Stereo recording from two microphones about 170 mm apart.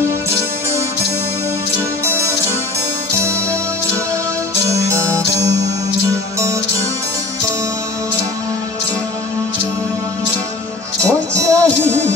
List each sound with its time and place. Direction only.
2.0 s music: 15° right (ahead or behind)
4.6 s music: 15° right (ahead or behind)
11.1 s music: 20° right (ahead or behind)